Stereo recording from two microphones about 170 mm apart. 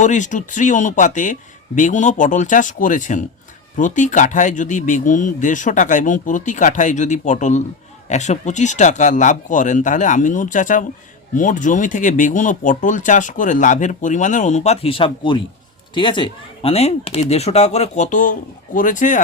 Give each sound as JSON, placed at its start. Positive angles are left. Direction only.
{"t": 0.0, "sound": "speech", "side_deg": 45}